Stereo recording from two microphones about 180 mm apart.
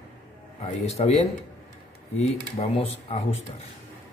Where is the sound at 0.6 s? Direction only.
35° left (ahead or behind).